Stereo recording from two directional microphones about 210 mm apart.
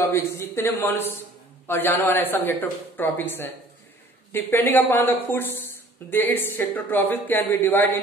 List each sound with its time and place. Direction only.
0.0 s a woman's voice: 10° left (ahead or behind)
4.3 s a woman's voice: 10° left (ahead or behind)